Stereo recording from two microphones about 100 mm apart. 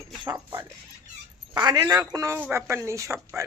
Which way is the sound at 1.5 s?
40° right (ahead or behind).